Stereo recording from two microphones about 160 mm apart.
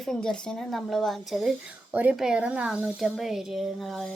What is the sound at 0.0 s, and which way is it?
Speech, 5° left (ahead or behind).